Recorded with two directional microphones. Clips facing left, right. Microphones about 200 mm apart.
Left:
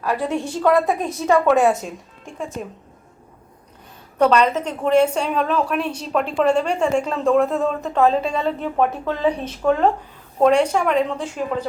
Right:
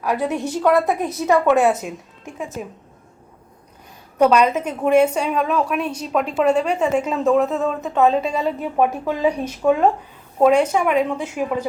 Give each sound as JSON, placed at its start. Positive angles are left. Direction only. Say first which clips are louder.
{"t": 0.0, "sound": "a woman's voice", "louder": "right 1 dB", "side_deg": -15}
{"t": 0.7, "sound": "speech", "louder": "even", "side_deg": -5}
{"t": 4.2, "sound": "a woman's voice", "louder": "right 1 dB", "side_deg": -10}